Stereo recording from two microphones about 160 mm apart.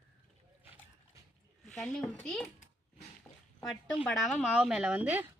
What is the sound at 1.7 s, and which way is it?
Speech, 5° left (ahead or behind).